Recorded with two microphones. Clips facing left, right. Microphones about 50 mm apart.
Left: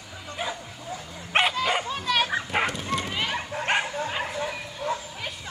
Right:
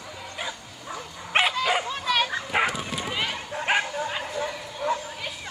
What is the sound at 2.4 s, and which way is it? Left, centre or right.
Bow-wow, centre.